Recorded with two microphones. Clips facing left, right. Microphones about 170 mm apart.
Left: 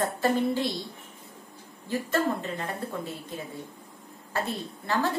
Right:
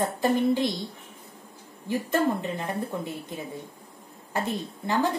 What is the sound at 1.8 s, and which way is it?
Speech, 15° right (ahead or behind).